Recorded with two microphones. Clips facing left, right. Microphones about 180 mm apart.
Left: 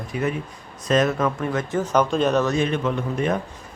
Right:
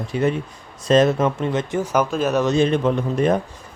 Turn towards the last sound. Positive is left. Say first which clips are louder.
# right 4 dB
turn(degrees=-35)  # may be behind; listen again after turning